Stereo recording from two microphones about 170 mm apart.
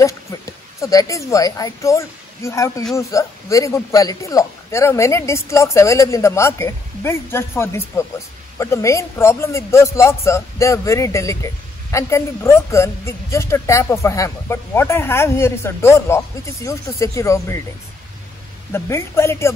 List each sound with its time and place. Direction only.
0.0 s a woman's voice: 20° left (ahead or behind)
18.7 s speech: 15° left (ahead or behind)